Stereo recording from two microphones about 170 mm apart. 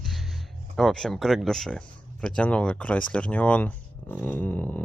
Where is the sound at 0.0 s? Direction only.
Centre (ahead or behind).